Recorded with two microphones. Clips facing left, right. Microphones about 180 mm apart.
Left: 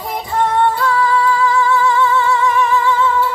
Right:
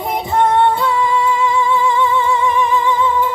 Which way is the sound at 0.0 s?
20° right (ahead or behind).